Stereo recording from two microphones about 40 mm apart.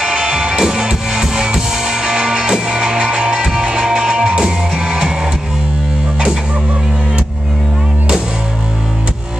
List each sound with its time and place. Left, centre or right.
0.0 s music: centre